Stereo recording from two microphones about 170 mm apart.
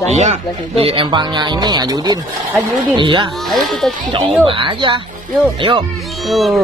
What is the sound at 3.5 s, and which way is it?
Speech, centre (ahead or behind).